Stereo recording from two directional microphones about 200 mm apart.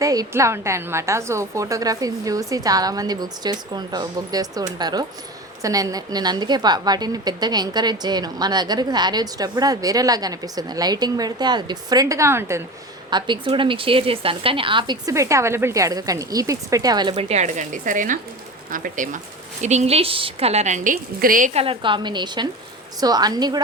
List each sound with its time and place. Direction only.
0.0 s a woman's voice: 15° right (ahead or behind)
17.2 s a woman's voice: 35° right (ahead or behind); by 23.6 s 20° right (ahead or behind)